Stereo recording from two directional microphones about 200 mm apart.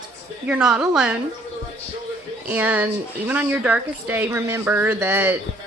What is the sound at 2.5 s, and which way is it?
A woman's voice, 10° right (ahead or behind).